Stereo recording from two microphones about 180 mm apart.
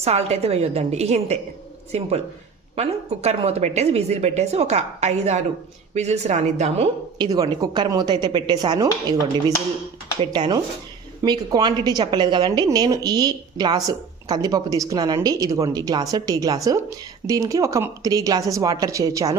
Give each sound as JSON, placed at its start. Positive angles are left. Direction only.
{"t": 0.0, "sound": "a woman's voice", "side_deg": -35}
{"t": 7.2, "sound": "a woman's voice", "side_deg": -20}
{"t": 10.2, "sound": "a woman's voice", "side_deg": -25}